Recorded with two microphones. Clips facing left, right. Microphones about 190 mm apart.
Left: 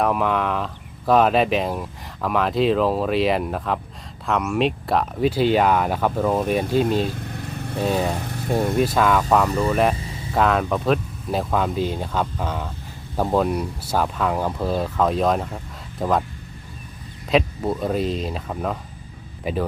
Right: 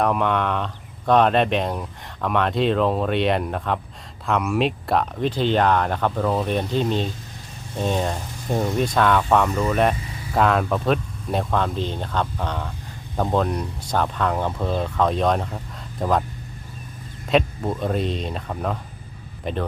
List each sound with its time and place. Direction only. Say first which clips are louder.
0.0 s speech: even; centre (ahead or behind)
7.1 s vehicle: left 7 dB; 60° left (ahead or behind)
7.9 s speech: left 1 dB; 5° left (ahead or behind)
8.2 s vehicle: left 6 dB; 65° left (ahead or behind)
8.4 s speech: left 2 dB; 5° left (ahead or behind)
17.2 s speech: left 1 dB; centre (ahead or behind)